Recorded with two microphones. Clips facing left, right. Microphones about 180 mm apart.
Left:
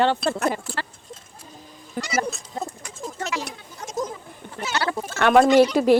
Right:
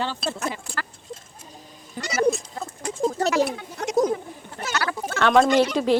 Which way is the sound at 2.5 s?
25° left (ahead or behind).